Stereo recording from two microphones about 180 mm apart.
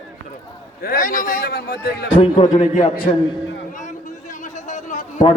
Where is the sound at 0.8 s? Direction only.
50° left (ahead or behind).